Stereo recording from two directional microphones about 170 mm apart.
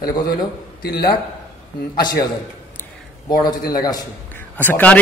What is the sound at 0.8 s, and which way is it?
Speech, 70° left (ahead or behind).